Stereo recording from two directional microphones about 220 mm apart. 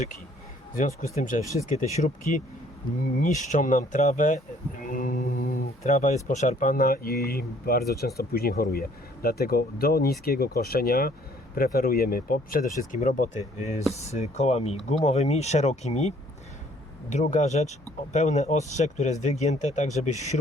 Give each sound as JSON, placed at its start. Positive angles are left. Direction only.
{"t": 0.8, "sound": "speech", "side_deg": 35}